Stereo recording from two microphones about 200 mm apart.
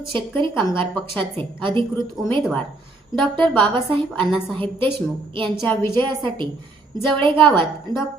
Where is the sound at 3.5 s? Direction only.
25° right (ahead or behind).